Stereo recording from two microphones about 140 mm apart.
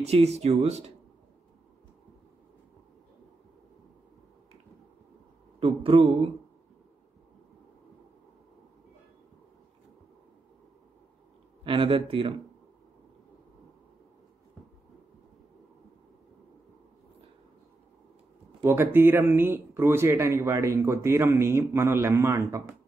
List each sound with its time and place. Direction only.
0.0 s speech: 50° right (ahead or behind)
5.6 s a man's voice: 40° right (ahead or behind)
11.6 s a man's voice: 40° right (ahead or behind)
18.6 s speech: 15° right (ahead or behind)